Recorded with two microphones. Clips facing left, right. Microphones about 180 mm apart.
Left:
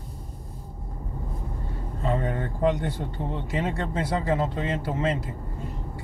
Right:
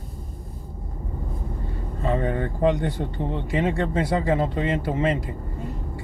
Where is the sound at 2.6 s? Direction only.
15° right (ahead or behind).